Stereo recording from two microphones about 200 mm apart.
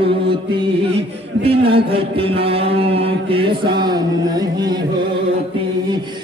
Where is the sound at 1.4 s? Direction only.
25° right (ahead or behind).